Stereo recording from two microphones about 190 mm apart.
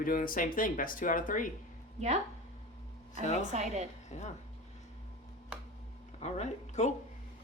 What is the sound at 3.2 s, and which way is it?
Speech, 40° left (ahead or behind).